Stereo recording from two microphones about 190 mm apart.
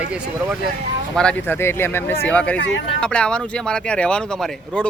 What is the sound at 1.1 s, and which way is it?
Speech, 5° left (ahead or behind).